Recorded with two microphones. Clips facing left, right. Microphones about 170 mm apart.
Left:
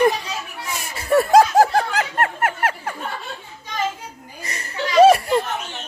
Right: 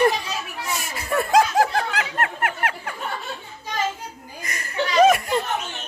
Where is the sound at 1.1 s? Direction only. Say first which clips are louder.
Left 5 dB; 35° left (ahead or behind).